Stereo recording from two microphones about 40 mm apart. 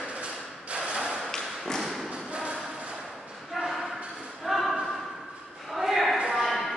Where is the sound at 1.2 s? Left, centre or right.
Centre.